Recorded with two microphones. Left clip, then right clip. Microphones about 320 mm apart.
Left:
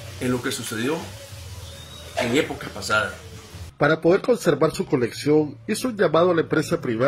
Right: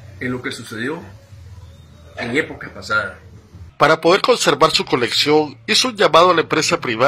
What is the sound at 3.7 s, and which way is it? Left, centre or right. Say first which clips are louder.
Speech: right 6 dB; right.